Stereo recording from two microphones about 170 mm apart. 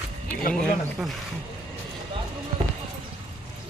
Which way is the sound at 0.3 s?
5° left (ahead or behind).